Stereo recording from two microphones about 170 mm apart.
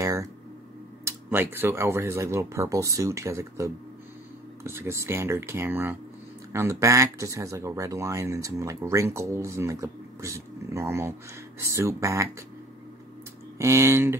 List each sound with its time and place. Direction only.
0.0 s a sound: 20° right (ahead or behind)
1.0 s speech: 15° right (ahead or behind)
13.6 s speech: 15° right (ahead or behind)